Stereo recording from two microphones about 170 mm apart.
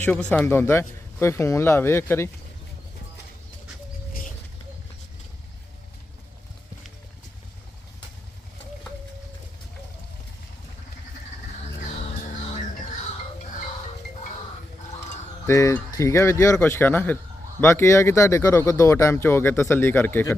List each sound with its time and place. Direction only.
0.0 s speech: 5° left (ahead or behind)
15.4 s speech: 15° left (ahead or behind)